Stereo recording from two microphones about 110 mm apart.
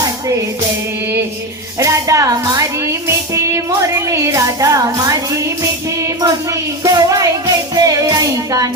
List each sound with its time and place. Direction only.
1.8 s speech: 30° right (ahead or behind)
6.8 s speech: 30° right (ahead or behind)
7.8 s music: 30° right (ahead or behind)